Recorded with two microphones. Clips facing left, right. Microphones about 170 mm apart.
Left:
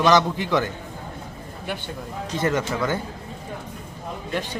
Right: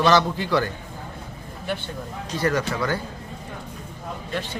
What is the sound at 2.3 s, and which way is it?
Speech, 20° left (ahead or behind).